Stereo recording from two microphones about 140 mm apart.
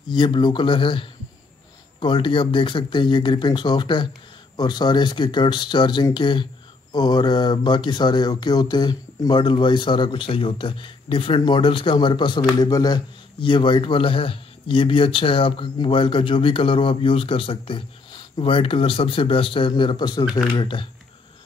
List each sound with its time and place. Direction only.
0.1 s speech: 30° left (ahead or behind)